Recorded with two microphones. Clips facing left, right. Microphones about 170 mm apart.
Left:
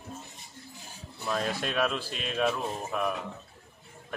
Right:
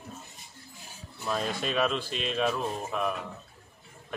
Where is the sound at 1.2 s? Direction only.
5° right (ahead or behind).